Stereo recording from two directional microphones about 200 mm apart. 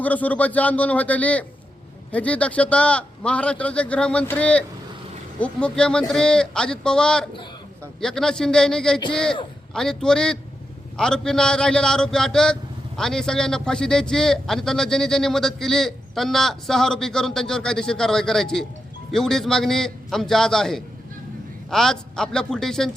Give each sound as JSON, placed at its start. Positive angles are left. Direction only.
{"t": 0.0, "sound": "a man's voice", "side_deg": 10}